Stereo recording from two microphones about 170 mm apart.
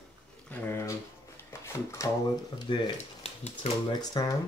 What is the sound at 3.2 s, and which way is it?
Speech, 40° left (ahead or behind).